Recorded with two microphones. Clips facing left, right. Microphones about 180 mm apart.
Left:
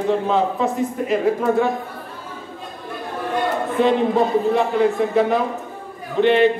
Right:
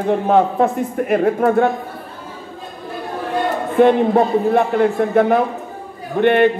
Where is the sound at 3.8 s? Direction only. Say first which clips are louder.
Right 5 dB; 55° right (ahead or behind).